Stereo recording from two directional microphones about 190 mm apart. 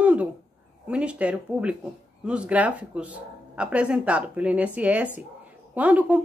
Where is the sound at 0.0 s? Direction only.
5° right (ahead or behind).